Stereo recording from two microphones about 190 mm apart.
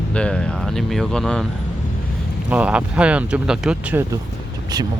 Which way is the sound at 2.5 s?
5° right (ahead or behind).